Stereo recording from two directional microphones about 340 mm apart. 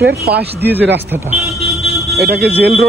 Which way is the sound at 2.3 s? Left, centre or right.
Right.